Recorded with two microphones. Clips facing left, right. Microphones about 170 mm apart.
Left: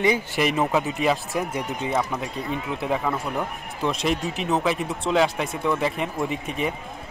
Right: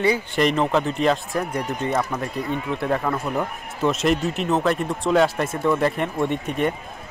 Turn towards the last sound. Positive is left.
turn(degrees=0)  # may be behind; listen again after turning